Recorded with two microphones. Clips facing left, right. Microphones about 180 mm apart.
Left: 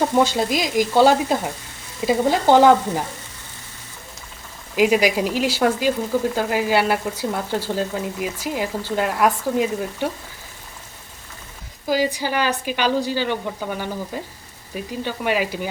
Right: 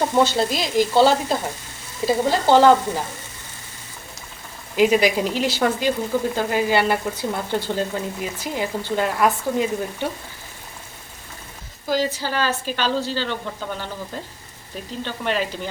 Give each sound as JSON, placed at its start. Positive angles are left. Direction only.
{"t": 0.1, "sound": "speech", "side_deg": 10}
{"t": 4.8, "sound": "speech", "side_deg": 10}
{"t": 11.9, "sound": "speech", "side_deg": 15}